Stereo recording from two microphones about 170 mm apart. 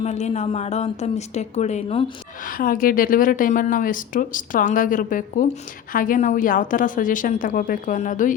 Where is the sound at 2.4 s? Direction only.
55° left (ahead or behind).